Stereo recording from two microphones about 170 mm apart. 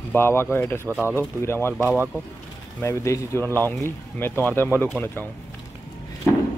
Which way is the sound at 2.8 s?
15° left (ahead or behind).